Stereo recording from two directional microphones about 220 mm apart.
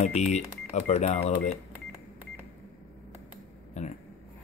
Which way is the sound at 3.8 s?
30° left (ahead or behind).